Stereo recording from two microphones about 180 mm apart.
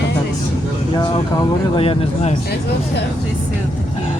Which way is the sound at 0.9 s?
25° left (ahead or behind).